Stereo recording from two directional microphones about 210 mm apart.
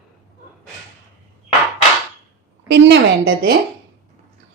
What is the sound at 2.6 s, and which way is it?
Speech, 55° right (ahead or behind).